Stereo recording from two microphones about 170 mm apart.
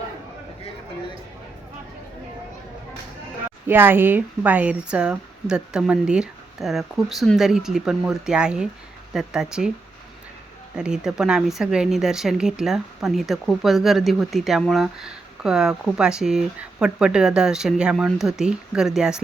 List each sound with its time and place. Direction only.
3.7 s speech: 10° right (ahead or behind)
10.8 s speech: 5° right (ahead or behind)